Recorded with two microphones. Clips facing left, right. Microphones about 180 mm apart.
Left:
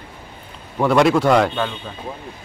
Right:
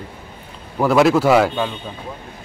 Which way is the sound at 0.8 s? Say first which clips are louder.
Right 1 dB; centre (ahead or behind).